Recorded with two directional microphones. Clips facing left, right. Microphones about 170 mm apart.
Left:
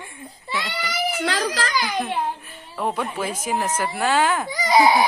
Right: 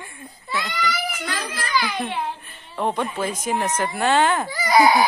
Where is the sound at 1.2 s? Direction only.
75° left (ahead or behind).